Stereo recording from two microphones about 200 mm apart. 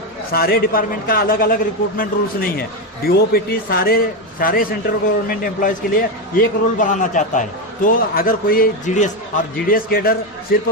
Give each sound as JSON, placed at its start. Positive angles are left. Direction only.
{"t": 0.3, "sound": "a man's voice", "side_deg": 50}